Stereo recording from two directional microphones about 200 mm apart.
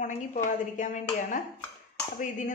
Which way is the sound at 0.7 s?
40° left (ahead or behind).